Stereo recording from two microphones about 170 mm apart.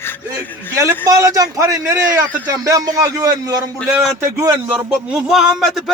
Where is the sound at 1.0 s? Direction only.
20° right (ahead or behind).